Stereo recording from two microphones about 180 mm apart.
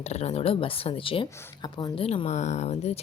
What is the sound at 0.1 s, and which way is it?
Speech, 35° left (ahead or behind).